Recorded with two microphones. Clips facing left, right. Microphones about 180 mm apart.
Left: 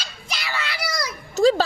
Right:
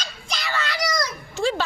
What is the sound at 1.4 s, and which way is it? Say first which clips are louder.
Speech: left 7 dB; 40° left (ahead or behind).